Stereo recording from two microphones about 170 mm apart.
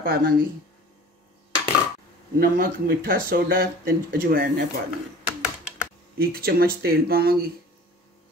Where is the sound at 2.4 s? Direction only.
60° right (ahead or behind).